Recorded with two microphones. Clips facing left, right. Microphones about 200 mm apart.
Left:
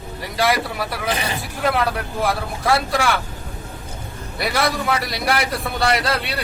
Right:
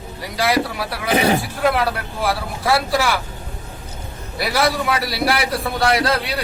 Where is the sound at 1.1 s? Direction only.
60° right (ahead or behind).